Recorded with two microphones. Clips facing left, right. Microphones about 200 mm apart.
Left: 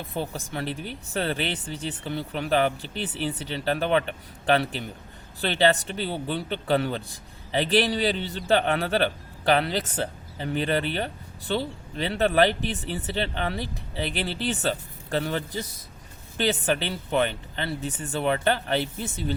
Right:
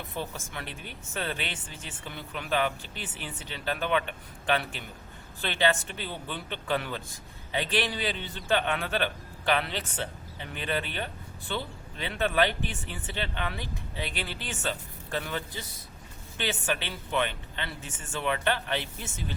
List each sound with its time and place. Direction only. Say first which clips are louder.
0.0 s speech: left 5 dB; 30° left (ahead or behind)